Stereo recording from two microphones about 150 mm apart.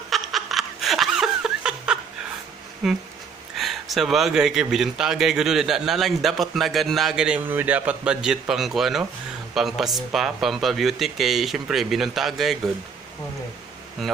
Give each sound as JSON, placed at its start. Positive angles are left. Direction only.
{"t": 0.1, "sound": "laughter", "side_deg": 0}
{"t": 2.8, "sound": "a man's voice", "side_deg": -5}
{"t": 14.0, "sound": "a man's voice", "side_deg": 0}